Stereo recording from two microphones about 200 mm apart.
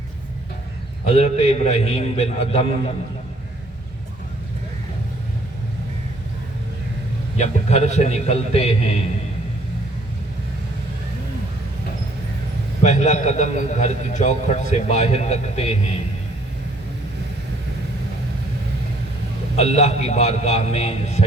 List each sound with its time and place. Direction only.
1.0 s a man's voice: 30° left (ahead or behind)
7.3 s a man's voice: 35° left (ahead or behind)
12.8 s a man's voice: 35° left (ahead or behind)
19.5 s a man's voice: 35° left (ahead or behind)